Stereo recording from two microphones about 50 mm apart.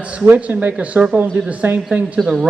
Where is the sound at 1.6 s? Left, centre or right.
Right.